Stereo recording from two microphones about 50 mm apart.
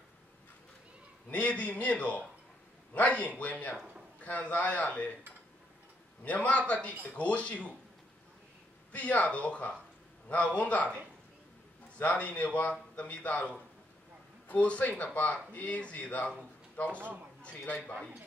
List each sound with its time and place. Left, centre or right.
1.3 s a man's voice: left
6.2 s a man's voice: left
8.9 s a man's voice: left
12.0 s a man's voice: left
14.5 s a man's voice: left